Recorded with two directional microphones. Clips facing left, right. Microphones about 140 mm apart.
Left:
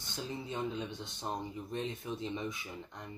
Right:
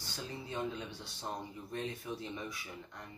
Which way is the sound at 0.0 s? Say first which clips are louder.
Left 3 dB; 20° left (ahead or behind).